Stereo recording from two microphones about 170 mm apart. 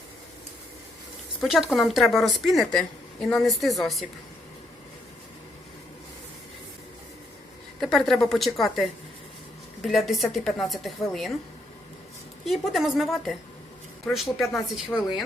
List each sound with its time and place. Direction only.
1.4 s a woman's voice: 5° right (ahead or behind)
7.8 s a woman's voice: centre (ahead or behind)
12.5 s a woman's voice: centre (ahead or behind)